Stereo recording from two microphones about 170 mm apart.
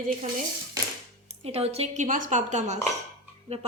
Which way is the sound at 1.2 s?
35° right (ahead or behind).